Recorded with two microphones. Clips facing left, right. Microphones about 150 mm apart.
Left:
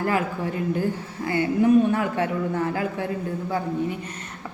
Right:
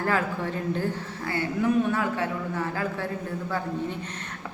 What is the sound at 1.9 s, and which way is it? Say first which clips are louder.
Speech: left 3 dB; 45° left (ahead or behind).